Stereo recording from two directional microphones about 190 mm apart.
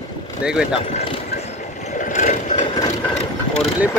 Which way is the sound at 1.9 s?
40° left (ahead or behind).